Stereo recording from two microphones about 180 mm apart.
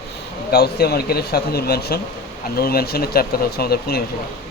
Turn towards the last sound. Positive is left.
turn(degrees=60)  # may be behind; listen again after turning